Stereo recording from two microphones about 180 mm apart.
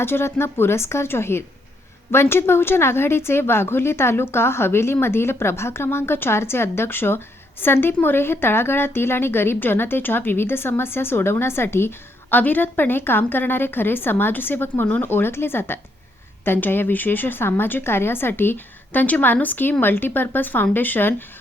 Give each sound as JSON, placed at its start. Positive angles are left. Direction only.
{"t": 0.0, "sound": "speech", "side_deg": 15}